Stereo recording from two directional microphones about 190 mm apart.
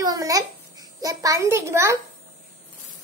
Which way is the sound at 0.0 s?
20° right (ahead or behind).